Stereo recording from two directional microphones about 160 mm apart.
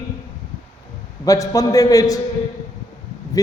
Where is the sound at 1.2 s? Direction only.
20° left (ahead or behind).